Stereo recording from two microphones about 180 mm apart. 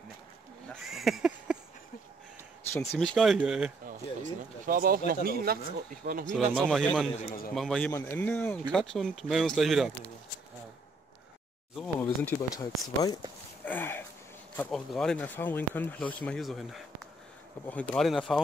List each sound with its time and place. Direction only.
0.8 s a sound: centre (ahead or behind)
2.7 s speech: 15° left (ahead or behind)
3.0 s speech: centre (ahead or behind)
3.8 s speech: 50° right (ahead or behind)
6.3 s speech: centre (ahead or behind)
7.2 s a man's voice: 50° left (ahead or behind)
7.5 s speech: centre (ahead or behind)
11.7 s a sound: 5° left (ahead or behind)
13.7 s a sound: 10° left (ahead or behind)
14.6 s speech: centre (ahead or behind)